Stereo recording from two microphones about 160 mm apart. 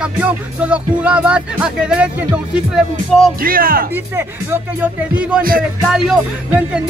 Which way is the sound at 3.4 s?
65° right (ahead or behind).